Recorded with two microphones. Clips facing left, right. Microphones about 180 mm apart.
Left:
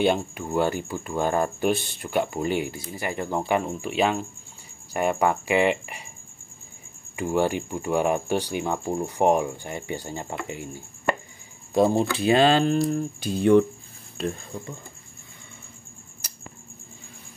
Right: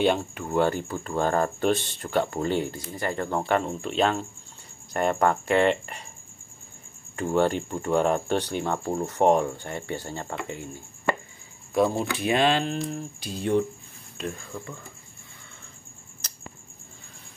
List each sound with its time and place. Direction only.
0.0 s speech: 10° left (ahead or behind)
7.2 s speech: 10° left (ahead or behind)
11.7 s speech: 25° left (ahead or behind); by 13.0 s 40° left (ahead or behind)
13.2 s cricket: 55° left (ahead or behind)
14.1 s speech: 30° left (ahead or behind)
16.2 s a sound: 10° left (ahead or behind)